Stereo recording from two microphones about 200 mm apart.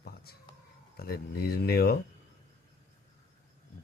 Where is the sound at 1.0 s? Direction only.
50° left (ahead or behind).